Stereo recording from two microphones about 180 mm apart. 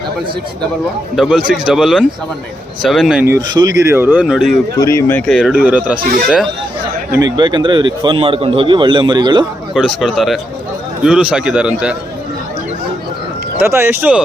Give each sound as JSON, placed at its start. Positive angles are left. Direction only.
{"t": 1.1, "sound": "a man's voice", "side_deg": -5}
{"t": 3.5, "sound": "speech", "side_deg": -20}
{"t": 4.8, "sound": "speech", "side_deg": 15}
{"t": 5.5, "sound": "speech", "side_deg": -10}
{"t": 6.0, "sound": "speech", "side_deg": -50}
{"t": 7.1, "sound": "speech", "side_deg": -20}
{"t": 9.7, "sound": "a man's voice", "side_deg": 0}
{"t": 13.6, "sound": "speech", "side_deg": -15}